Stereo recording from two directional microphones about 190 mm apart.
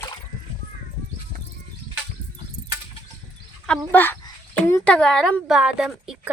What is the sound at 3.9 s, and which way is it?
Speech, 10° left (ahead or behind).